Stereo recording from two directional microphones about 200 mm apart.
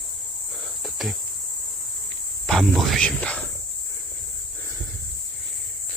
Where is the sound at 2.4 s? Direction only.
Centre (ahead or behind).